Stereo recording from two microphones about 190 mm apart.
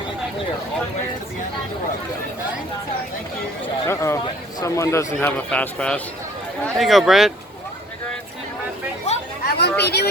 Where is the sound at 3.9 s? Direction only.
15° left (ahead or behind).